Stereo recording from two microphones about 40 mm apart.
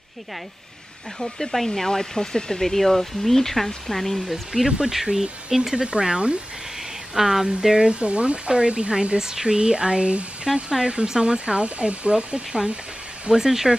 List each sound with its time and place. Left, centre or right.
1.2 s speech: centre
4.5 s speech: centre
7.2 s speech: centre
7.8 s speech: right
9.2 s speech: centre
13.3 s speech: centre